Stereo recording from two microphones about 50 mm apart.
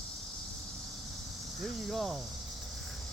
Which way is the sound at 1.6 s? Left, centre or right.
Centre.